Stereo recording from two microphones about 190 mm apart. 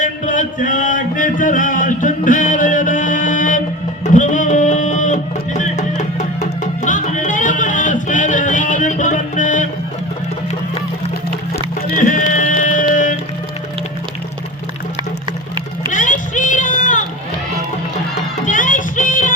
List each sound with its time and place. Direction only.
0.0 s music: 40° left (ahead or behind)
11.5 s music: 45° left (ahead or behind)
15.3 s music: 25° right (ahead or behind)
15.9 s a sound: 40° left (ahead or behind)
18.4 s music: 45° left (ahead or behind)